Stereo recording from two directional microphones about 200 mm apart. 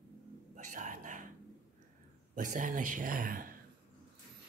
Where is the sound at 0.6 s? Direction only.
40° right (ahead or behind).